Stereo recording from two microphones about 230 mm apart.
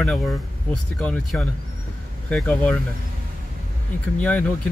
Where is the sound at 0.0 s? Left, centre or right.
Centre.